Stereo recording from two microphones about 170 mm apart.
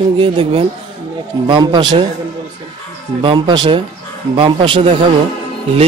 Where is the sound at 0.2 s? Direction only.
30° right (ahead or behind).